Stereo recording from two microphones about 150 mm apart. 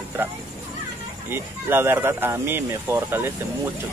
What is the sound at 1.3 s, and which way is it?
Speech, 15° right (ahead or behind).